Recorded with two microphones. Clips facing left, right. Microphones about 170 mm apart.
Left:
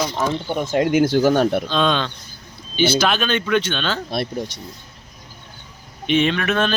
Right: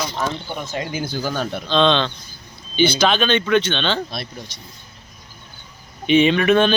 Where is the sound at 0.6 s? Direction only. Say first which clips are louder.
Left 12 dB; 55° left (ahead or behind).